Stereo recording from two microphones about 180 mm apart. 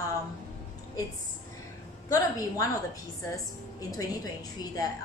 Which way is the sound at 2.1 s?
20° left (ahead or behind).